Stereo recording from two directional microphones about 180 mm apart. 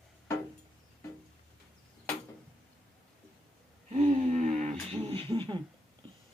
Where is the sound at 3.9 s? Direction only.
40° right (ahead or behind).